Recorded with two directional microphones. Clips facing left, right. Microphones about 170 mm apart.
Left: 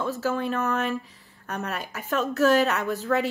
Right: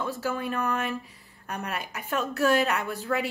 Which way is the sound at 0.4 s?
15° right (ahead or behind).